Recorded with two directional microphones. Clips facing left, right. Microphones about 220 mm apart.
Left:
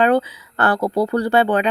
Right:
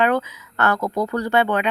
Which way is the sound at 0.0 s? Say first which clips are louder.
Left 4 dB; 30° left (ahead or behind).